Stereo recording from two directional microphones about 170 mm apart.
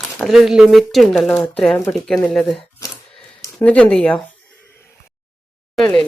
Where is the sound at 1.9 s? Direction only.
5° left (ahead or behind).